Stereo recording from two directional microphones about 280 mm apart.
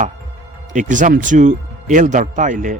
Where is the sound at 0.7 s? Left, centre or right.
Right.